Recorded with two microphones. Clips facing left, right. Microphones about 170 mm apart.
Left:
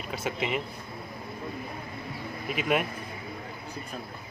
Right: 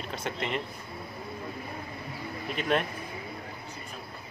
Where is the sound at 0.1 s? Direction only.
5° left (ahead or behind).